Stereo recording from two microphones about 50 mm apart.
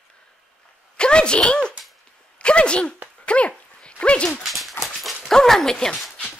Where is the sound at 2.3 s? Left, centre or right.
Left.